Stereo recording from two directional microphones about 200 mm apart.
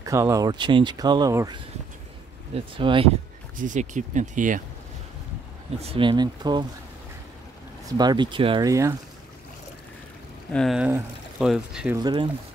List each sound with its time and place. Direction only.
0.0 s speech: 15° right (ahead or behind)
3.5 s speech: 40° right (ahead or behind)
5.8 s speech: 30° right (ahead or behind)
8.0 s speech: 20° right (ahead or behind)
10.5 s speech: centre (ahead or behind)
12.0 s speech: 20° right (ahead or behind)